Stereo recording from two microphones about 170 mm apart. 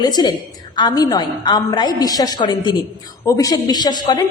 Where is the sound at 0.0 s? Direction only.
25° left (ahead or behind).